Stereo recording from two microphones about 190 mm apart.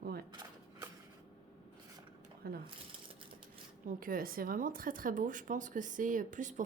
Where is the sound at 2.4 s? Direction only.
55° right (ahead or behind).